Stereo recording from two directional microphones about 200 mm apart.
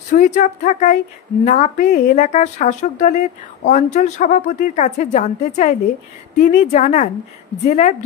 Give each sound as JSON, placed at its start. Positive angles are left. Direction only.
{"t": 0.1, "sound": "a woman's voice", "side_deg": 40}